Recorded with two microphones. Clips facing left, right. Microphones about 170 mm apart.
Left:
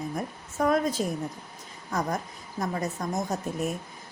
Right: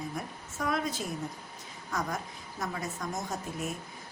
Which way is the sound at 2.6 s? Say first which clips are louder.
Left 6 dB; 45° left (ahead or behind).